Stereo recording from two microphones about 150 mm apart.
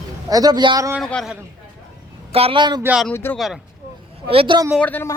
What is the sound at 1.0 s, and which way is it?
Speech, 5° left (ahead or behind).